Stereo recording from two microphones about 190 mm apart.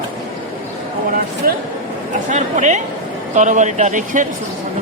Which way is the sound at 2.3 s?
40° right (ahead or behind).